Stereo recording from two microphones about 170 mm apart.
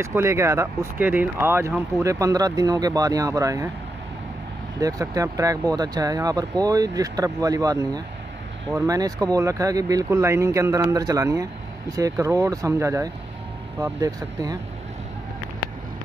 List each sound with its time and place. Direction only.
0.0 s speech: 15° right (ahead or behind)
4.7 s speech: 20° right (ahead or behind)